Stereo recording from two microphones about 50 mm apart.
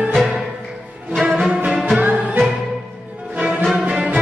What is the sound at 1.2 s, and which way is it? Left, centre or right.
Music, right.